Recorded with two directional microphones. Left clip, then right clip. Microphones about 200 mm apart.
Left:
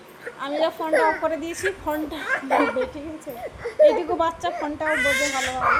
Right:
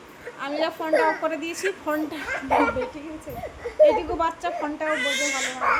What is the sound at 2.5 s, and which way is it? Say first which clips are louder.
Speech: even; 45° left (ahead or behind).